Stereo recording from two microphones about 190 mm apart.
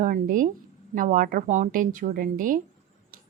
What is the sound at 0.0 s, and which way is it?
A woman's voice, 45° right (ahead or behind).